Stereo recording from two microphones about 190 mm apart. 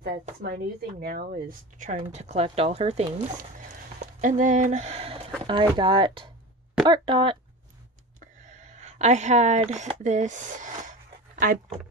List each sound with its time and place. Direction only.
0.0 s speech: 50° right (ahead or behind)
2.0 s speech: 35° right (ahead or behind)
8.2 s speech: 40° right (ahead or behind)